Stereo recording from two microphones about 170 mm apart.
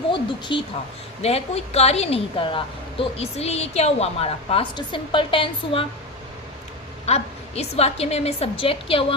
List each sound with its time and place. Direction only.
0.1 s a woman's voice: 25° left (ahead or behind)
1.2 s a woman's voice: 35° left (ahead or behind)
7.0 s a woman's voice: 40° left (ahead or behind)